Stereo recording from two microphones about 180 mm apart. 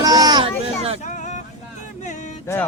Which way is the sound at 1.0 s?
45° left (ahead or behind).